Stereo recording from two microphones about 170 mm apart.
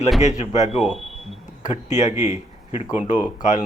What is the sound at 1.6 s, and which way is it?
Speech, 45° left (ahead or behind).